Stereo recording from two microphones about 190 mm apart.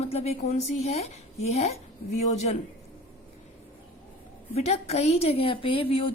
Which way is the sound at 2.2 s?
35° left (ahead or behind).